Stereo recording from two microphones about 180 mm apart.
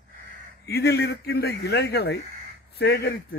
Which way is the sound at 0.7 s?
65° left (ahead or behind).